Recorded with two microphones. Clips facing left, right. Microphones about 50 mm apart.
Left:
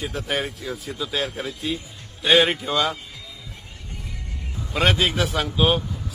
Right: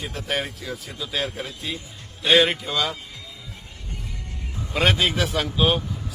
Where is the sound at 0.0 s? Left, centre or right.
Centre.